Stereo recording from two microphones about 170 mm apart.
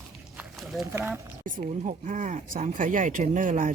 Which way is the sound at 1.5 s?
50° right (ahead or behind).